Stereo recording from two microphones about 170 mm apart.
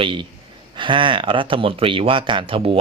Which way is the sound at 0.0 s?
30° right (ahead or behind).